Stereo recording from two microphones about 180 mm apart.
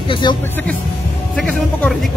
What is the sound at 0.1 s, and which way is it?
Speech, 25° left (ahead or behind).